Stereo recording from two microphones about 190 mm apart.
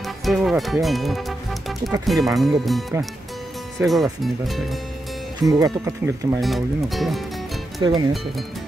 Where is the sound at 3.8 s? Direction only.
Centre (ahead or behind).